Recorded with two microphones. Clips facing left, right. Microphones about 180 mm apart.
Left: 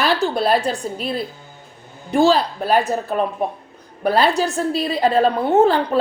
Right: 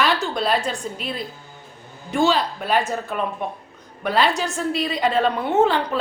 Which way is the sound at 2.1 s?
35° left (ahead or behind).